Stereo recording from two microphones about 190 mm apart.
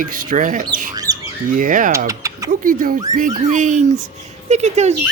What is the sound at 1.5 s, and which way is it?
Speech, 45° right (ahead or behind).